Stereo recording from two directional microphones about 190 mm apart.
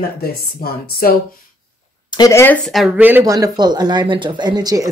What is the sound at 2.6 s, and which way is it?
Speech, centre (ahead or behind).